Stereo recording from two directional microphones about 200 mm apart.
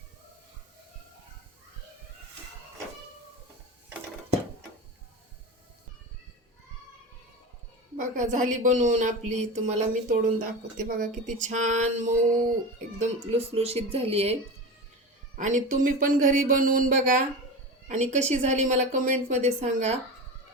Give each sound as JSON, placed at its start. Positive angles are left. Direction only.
{"t": 7.9, "sound": "a woman's voice", "side_deg": -40}
{"t": 15.4, "sound": "speech", "side_deg": -40}